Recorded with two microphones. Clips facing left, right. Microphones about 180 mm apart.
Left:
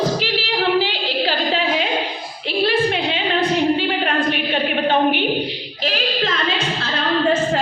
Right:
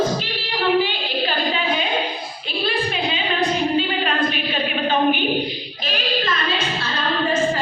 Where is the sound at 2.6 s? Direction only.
75° left (ahead or behind).